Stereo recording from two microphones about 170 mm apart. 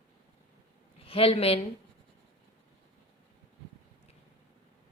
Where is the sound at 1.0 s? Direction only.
35° left (ahead or behind).